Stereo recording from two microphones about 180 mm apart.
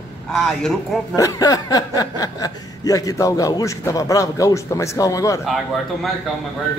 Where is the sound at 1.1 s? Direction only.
20° left (ahead or behind).